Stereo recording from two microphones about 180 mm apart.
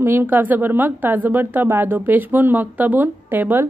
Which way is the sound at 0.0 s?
15° right (ahead or behind).